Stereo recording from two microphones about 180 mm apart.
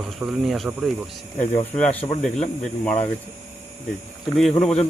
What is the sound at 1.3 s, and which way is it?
Speech, 40° left (ahead or behind).